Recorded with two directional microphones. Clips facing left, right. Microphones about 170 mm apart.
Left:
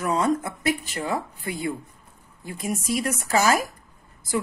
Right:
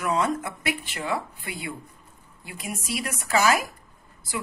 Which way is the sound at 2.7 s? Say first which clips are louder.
Left 6 dB; 45° left (ahead or behind).